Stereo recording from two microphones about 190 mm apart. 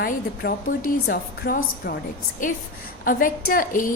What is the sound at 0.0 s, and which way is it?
A woman's voice, 55° left (ahead or behind).